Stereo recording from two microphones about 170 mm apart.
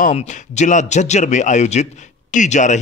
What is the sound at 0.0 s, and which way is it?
Speech, 40° left (ahead or behind).